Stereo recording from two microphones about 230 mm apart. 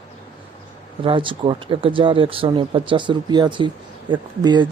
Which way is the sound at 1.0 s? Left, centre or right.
Right.